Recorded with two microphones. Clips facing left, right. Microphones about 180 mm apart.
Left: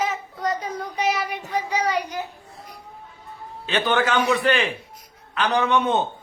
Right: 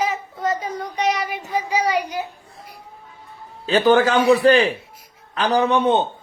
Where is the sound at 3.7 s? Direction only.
35° right (ahead or behind).